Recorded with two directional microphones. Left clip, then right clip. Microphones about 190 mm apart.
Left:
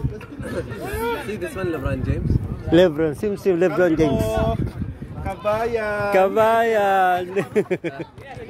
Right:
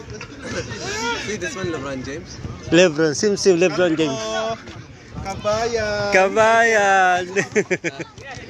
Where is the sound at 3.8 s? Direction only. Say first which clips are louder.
Left 1 dB; 15° left (ahead or behind).